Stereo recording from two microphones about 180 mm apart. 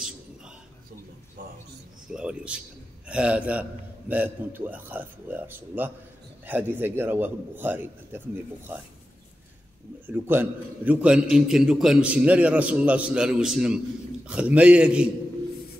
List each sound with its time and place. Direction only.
1.4 s a sound: 50° right (ahead or behind)
2.0 s a man's voice: 5° right (ahead or behind)
10.0 s a man's voice: 10° right (ahead or behind)